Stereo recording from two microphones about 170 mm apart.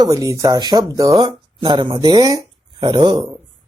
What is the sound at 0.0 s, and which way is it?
Speech, 20° right (ahead or behind).